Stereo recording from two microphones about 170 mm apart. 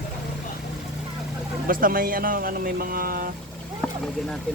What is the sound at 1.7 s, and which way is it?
Speech, 55° right (ahead or behind).